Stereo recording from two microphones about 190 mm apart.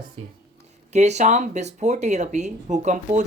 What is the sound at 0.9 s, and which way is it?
Speech, 35° right (ahead or behind).